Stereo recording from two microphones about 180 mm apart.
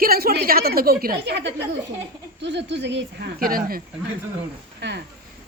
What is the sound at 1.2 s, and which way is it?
Speech, 75° right (ahead or behind).